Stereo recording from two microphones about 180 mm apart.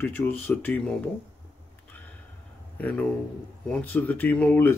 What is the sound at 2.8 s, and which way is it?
Speech, 10° left (ahead or behind).